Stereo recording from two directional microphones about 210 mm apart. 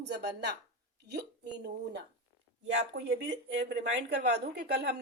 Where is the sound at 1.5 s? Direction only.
55° right (ahead or behind).